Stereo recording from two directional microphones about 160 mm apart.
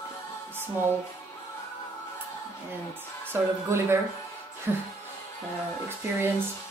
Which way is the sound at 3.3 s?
15° right (ahead or behind).